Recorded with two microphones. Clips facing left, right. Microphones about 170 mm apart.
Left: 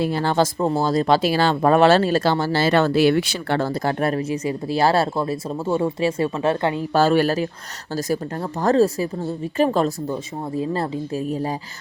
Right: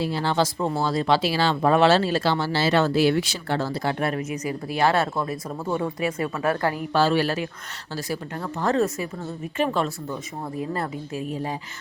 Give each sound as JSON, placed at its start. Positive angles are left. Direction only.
{"t": 0.0, "sound": "speech", "side_deg": 50}
{"t": 6.9, "sound": "a woman's voice", "side_deg": 45}